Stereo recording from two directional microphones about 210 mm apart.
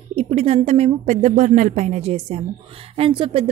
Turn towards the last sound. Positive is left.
turn(degrees=-25)  # may be behind; listen again after turning